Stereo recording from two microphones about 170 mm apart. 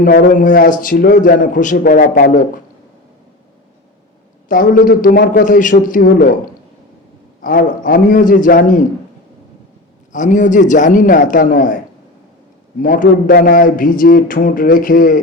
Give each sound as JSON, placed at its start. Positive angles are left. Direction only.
{"t": 0.0, "sound": "a man's voice", "side_deg": 55}
{"t": 4.4, "sound": "a man's voice", "side_deg": 55}
{"t": 7.4, "sound": "a man's voice", "side_deg": 55}
{"t": 10.1, "sound": "a man's voice", "side_deg": 50}
{"t": 12.8, "sound": "a man's voice", "side_deg": 50}